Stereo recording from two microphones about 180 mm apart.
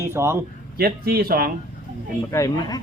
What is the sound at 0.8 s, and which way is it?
Speech, 55° right (ahead or behind).